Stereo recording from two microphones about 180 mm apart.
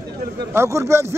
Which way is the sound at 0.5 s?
15° right (ahead or behind).